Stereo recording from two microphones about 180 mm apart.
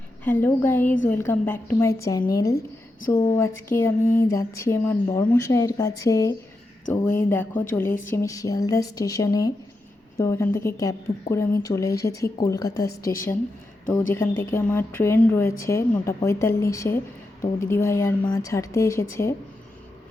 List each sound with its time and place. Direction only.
0.3 s a woman's voice: 10° left (ahead or behind)